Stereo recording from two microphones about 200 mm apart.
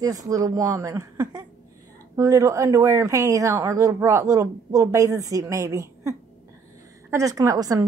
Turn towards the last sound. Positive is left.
turn(degrees=-15)  # may be behind; listen again after turning